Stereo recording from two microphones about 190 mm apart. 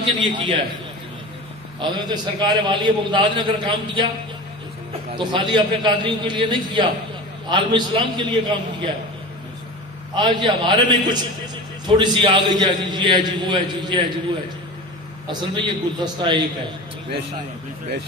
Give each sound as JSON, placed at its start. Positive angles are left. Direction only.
{"t": 0.2, "sound": "a man's voice", "side_deg": -25}
{"t": 1.8, "sound": "a man's voice", "side_deg": -20}
{"t": 5.1, "sound": "a man's voice", "side_deg": -25}
{"t": 10.1, "sound": "a man's voice", "side_deg": -20}
{"t": 15.2, "sound": "a man's voice", "side_deg": -20}